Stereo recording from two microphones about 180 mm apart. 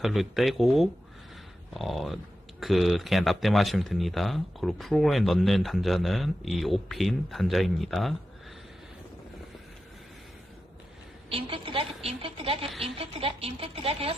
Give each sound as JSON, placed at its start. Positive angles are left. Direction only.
{"t": 0.0, "sound": "speech", "side_deg": 0}
{"t": 11.2, "sound": "a woman's voice", "side_deg": -30}